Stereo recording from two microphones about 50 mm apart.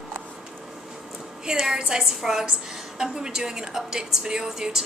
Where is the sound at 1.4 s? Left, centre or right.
Centre.